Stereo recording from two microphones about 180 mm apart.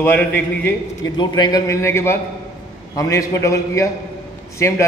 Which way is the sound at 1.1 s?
25° left (ahead or behind).